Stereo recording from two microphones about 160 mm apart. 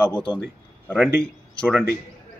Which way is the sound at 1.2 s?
5° left (ahead or behind).